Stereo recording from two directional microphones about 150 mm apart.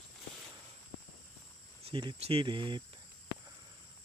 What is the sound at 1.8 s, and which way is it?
Speech, 35° right (ahead or behind).